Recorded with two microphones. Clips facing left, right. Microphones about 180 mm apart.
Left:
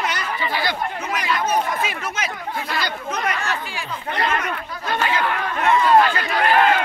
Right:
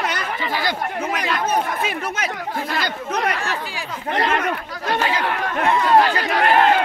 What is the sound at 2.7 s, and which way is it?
Speech, 50° right (ahead or behind).